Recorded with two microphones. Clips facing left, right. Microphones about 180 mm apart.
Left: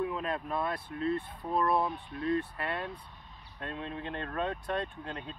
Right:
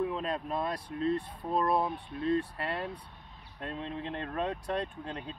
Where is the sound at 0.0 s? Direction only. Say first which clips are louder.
Right 1 dB; 30° right (ahead or behind).